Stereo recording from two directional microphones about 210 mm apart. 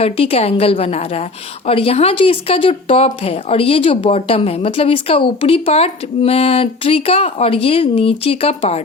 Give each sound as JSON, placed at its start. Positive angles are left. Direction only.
{"t": 0.0, "sound": "speech", "side_deg": 25}